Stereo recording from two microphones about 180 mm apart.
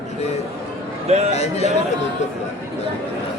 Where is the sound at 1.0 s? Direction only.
35° right (ahead or behind).